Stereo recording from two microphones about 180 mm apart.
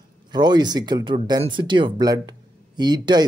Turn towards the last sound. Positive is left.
turn(degrees=-25)  # may be behind; listen again after turning